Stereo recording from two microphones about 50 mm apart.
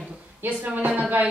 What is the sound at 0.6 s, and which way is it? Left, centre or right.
Speech, right.